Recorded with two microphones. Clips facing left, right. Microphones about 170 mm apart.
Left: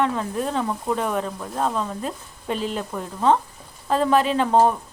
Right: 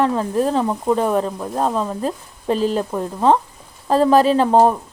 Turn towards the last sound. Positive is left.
turn(degrees=-35)  # may be behind; listen again after turning